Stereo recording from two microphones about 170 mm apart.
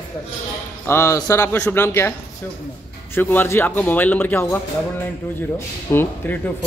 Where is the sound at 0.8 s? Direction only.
15° left (ahead or behind).